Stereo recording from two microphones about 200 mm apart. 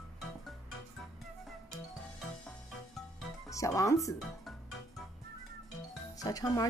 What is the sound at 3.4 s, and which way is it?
Speech, 15° left (ahead or behind).